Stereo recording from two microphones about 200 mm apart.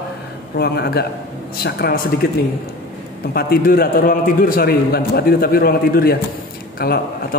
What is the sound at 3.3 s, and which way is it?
A man's voice, 50° left (ahead or behind).